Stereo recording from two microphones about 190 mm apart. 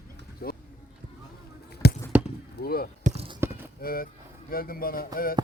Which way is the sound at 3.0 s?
35° right (ahead or behind).